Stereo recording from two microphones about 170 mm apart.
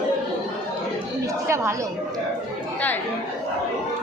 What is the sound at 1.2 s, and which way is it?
Chatter, 15° right (ahead or behind).